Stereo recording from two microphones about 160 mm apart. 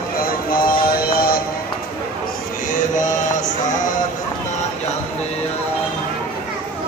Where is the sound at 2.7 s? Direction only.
50° left (ahead or behind).